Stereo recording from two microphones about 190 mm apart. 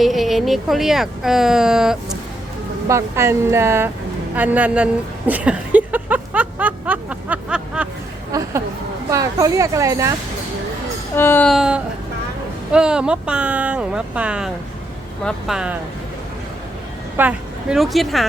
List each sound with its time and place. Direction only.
0.0 s speech: centre (ahead or behind)
2.9 s speech: 15° right (ahead or behind)
4.4 s a sound: 10° right (ahead or behind)
8.3 s a sound: 15° right (ahead or behind)
9.0 s speech: 15° right (ahead or behind)
11.1 s speech: 10° left (ahead or behind)
11.5 s speech: 5° right (ahead or behind)
17.2 s a woman's voice: 5° right (ahead or behind)